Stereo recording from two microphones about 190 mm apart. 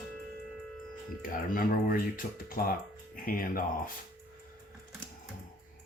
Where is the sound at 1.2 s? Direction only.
45° left (ahead or behind).